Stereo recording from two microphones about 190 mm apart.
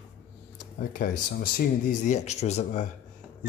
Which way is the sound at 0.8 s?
45° left (ahead or behind).